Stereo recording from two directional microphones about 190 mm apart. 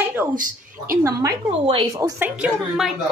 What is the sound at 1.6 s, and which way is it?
Speech, 25° right (ahead or behind).